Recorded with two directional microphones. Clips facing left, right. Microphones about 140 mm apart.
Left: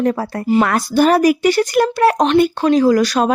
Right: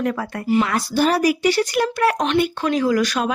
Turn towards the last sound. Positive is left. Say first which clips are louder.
# left 6 dB
turn(degrees=35)  # may be behind; listen again after turning